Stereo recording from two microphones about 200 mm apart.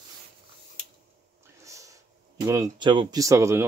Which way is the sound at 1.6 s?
15° right (ahead or behind).